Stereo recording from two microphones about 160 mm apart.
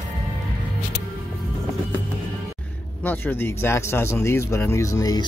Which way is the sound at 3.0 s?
10° left (ahead or behind).